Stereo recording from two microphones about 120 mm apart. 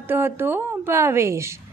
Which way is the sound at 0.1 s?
15° right (ahead or behind).